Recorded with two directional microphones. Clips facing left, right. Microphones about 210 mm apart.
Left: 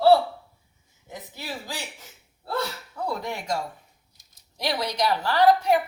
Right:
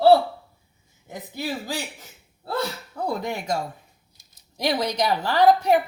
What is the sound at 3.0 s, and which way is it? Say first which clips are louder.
Speech: right 3 dB; 15° right (ahead or behind).